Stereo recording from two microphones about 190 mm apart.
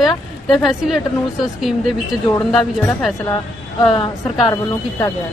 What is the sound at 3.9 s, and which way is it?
Speech, 25° left (ahead or behind).